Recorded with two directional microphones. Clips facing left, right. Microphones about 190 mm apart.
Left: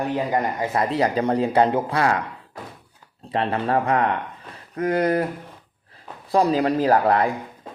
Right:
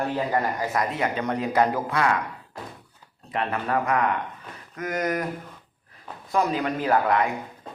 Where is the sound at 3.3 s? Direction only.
30° left (ahead or behind).